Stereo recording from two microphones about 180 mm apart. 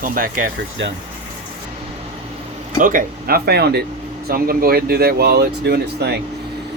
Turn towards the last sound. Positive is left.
turn(degrees=-65)  # may be behind; listen again after turning